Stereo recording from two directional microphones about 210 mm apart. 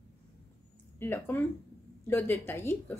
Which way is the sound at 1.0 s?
10° left (ahead or behind).